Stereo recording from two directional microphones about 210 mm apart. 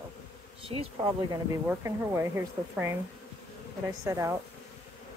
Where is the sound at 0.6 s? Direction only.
20° right (ahead or behind).